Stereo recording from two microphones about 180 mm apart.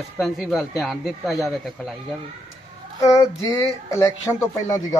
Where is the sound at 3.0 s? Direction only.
15° left (ahead or behind).